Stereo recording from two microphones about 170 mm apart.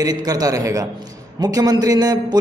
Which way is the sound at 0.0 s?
25° right (ahead or behind).